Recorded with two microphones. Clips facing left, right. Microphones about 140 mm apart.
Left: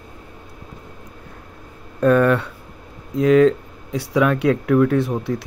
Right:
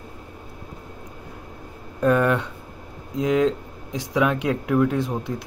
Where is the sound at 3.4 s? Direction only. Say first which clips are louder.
Left 6 dB; 65° left (ahead or behind).